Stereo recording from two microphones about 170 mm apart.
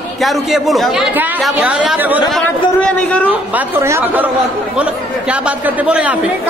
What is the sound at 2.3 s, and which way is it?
Speech, 5° left (ahead or behind).